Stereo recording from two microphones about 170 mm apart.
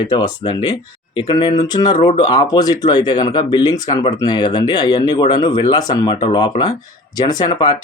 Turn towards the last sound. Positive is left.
turn(degrees=25)  # may be behind; listen again after turning